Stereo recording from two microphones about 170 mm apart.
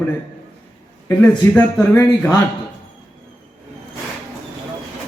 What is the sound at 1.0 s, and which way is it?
A man's voice, 10° left (ahead or behind).